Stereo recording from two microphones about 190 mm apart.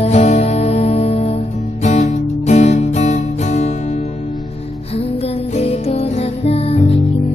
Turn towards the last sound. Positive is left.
turn(degrees=30)  # may be behind; listen again after turning